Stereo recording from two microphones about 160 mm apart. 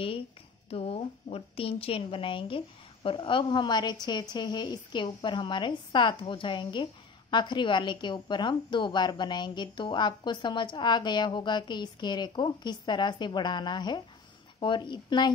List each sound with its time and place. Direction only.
0.7 s a woman's voice: 35° left (ahead or behind)